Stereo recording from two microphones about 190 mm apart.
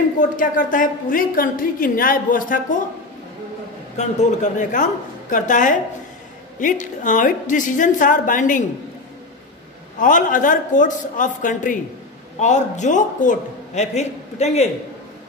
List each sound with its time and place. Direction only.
0.4 s a woman's voice: 45° left (ahead or behind)
3.9 s a man's voice: 40° left (ahead or behind)
9.9 s a woman's voice: 45° left (ahead or behind)